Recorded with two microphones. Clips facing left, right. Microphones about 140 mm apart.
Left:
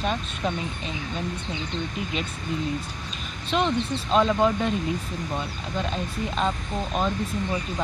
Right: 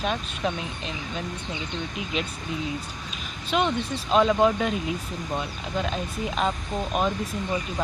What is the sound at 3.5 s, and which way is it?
Speech, 5° right (ahead or behind).